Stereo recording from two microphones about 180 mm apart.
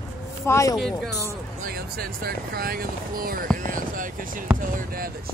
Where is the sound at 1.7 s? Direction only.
55° right (ahead or behind).